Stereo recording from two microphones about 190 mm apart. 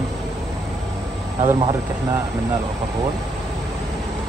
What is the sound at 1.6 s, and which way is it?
Speech, 20° right (ahead or behind).